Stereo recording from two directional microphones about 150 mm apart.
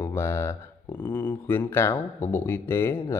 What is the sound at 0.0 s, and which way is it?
Speech, 15° left (ahead or behind).